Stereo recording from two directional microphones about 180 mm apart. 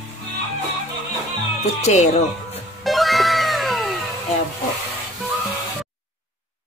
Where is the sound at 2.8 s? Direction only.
Centre (ahead or behind).